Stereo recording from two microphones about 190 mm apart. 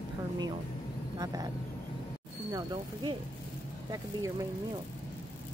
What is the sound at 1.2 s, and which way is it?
Speech, 20° right (ahead or behind).